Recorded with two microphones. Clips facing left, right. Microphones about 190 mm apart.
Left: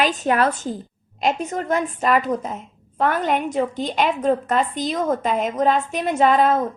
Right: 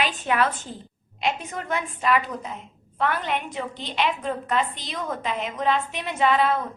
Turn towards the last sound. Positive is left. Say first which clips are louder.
# left 5 dB
turn(degrees=45)  # may be behind; listen again after turning